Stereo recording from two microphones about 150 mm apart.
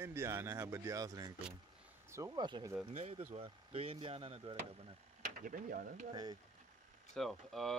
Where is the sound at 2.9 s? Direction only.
45° right (ahead or behind).